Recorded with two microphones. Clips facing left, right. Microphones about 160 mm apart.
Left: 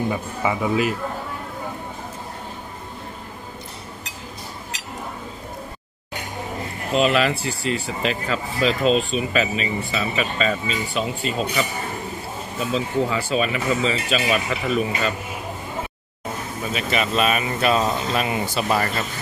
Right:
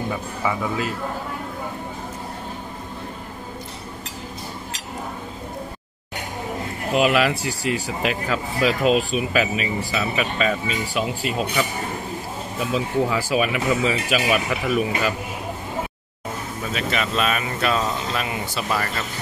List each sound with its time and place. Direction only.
0.5 s speech: 15° left (ahead or behind)
6.9 s speech: 5° right (ahead or behind)
7.3 s speech: 90° right
8.0 s speech: 5° right (ahead or behind)
12.5 s speech: 10° right (ahead or behind)
16.7 s speech: 10° left (ahead or behind)